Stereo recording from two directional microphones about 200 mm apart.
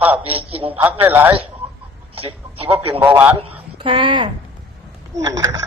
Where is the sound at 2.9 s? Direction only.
10° right (ahead or behind).